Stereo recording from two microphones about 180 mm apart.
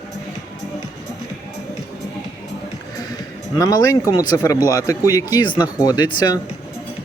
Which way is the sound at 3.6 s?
20° left (ahead or behind).